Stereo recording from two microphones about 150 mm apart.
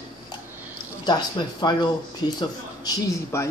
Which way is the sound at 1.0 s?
30° left (ahead or behind).